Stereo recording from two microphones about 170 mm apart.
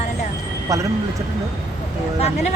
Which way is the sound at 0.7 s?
20° right (ahead or behind).